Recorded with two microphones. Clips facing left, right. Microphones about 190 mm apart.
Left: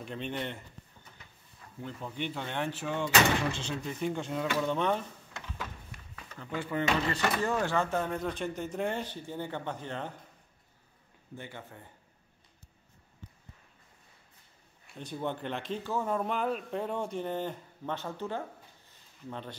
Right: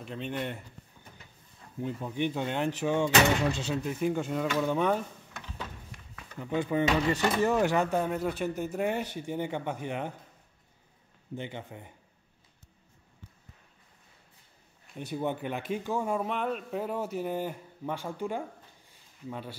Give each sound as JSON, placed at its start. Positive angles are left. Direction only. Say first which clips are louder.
{"t": 0.0, "sound": "speech", "louder": "right 1 dB", "side_deg": 0}
{"t": 1.8, "sound": "speech", "louder": "right 6 dB", "side_deg": -15}
{"t": 3.8, "sound": "speech", "louder": "right 3 dB", "side_deg": -5}
{"t": 6.4, "sound": "speech", "louder": "right 5 dB", "side_deg": -15}
{"t": 11.3, "sound": "speech", "louder": "right 6 dB", "side_deg": -20}
{"t": 15.0, "sound": "speech", "louder": "right 3 dB", "side_deg": -10}
{"t": 18.9, "sound": "a sound", "louder": "right 3 dB", "side_deg": -10}